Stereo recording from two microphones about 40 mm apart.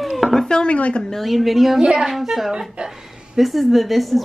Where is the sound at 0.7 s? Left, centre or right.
Left.